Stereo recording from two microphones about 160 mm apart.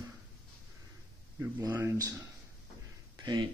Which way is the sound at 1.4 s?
15° right (ahead or behind).